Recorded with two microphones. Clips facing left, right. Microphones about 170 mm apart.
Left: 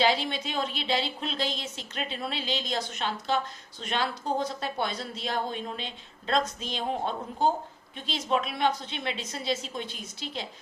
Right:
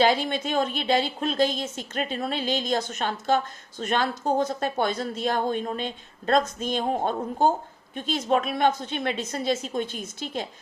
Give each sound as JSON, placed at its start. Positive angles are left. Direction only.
{"t": 0.0, "sound": "a woman's voice", "side_deg": -50}